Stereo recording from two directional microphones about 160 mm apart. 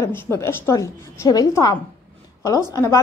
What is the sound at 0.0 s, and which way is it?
A woman's voice, 15° left (ahead or behind).